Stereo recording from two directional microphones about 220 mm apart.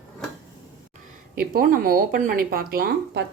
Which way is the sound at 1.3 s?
40° right (ahead or behind).